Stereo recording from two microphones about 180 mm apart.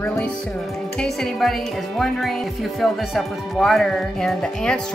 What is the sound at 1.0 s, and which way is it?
Speech, centre (ahead or behind).